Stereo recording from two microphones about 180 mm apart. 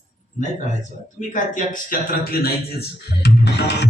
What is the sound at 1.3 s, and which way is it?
A man's voice, 45° left (ahead or behind).